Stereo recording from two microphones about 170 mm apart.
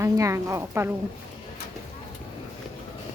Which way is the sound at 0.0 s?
15° right (ahead or behind).